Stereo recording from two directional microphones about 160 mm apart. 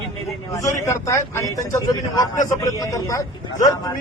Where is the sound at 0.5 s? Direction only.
20° left (ahead or behind).